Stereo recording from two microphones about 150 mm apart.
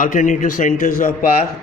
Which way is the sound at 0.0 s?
60° left (ahead or behind).